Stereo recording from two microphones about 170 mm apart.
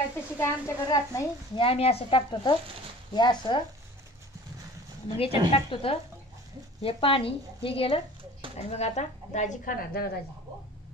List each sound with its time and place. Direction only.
0.4 s a woman's voice: 15° left (ahead or behind)
1.7 s speech: 35° left (ahead or behind)
5.0 s speech: 35° left (ahead or behind); by 10.1 s 65° left (ahead or behind)